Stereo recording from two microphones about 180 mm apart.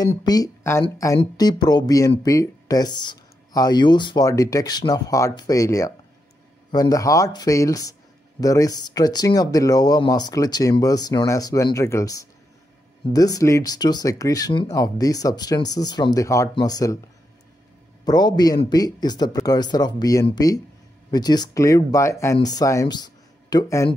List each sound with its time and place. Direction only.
0.0 s speech: 20° left (ahead or behind)
18.0 s speech: 20° left (ahead or behind)